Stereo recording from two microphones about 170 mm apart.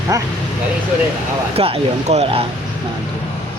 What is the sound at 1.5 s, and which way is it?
Speech, 35° right (ahead or behind).